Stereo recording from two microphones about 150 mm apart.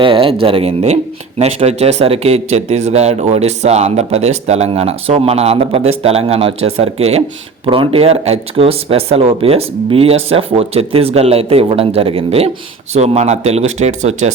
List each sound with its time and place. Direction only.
0.0 s speech: 35° right (ahead or behind)